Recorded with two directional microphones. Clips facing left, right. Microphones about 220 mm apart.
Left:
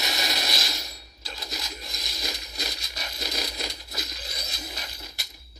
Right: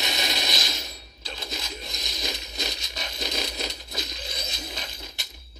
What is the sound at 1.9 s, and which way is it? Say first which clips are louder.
Crushing: right 3 dB; 25° right (ahead or behind).